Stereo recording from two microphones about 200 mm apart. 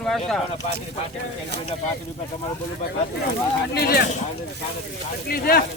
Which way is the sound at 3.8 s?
50° left (ahead or behind).